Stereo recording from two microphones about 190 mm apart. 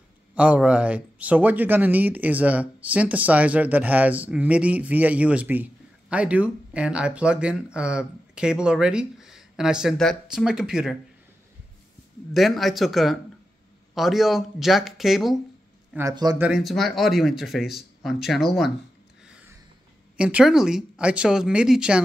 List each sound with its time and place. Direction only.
0.3 s speech: 5° right (ahead or behind)
12.4 s speech: centre (ahead or behind)
16.0 s a man's voice: 20° right (ahead or behind)
16.3 s speech: 5° right (ahead or behind)
20.2 s speech: 5° right (ahead or behind)